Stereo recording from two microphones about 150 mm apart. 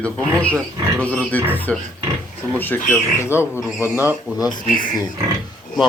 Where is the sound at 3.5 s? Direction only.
15° right (ahead or behind).